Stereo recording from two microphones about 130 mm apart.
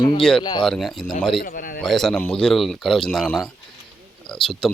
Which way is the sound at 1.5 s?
90° left.